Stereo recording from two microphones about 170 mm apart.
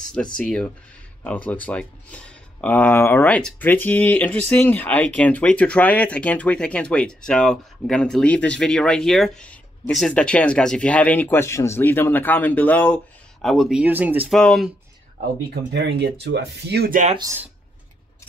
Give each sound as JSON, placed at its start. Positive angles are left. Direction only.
{"t": 0.0, "sound": "speech", "side_deg": 5}
{"t": 14.3, "sound": "speech", "side_deg": 0}
{"t": 15.7, "sound": "speech", "side_deg": -85}
{"t": 17.2, "sound": "speech", "side_deg": -15}